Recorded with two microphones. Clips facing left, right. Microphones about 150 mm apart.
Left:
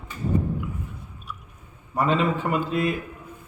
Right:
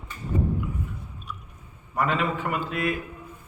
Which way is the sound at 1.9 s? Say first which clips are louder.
Left 3 dB; 25° left (ahead or behind).